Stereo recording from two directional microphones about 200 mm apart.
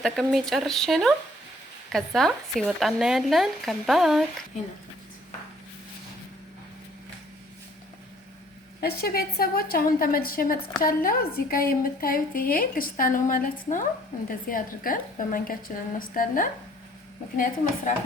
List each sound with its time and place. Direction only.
0.0 s speech: centre (ahead or behind)
8.8 s a woman's voice: 50° left (ahead or behind)